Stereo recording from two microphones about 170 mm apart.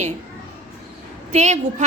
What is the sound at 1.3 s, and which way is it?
Speech, 40° right (ahead or behind).